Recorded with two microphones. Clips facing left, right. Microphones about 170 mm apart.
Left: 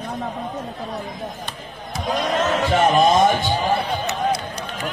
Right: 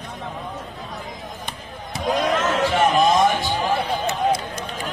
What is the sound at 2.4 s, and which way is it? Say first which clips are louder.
Music: left 1 dB; 45° left (ahead or behind).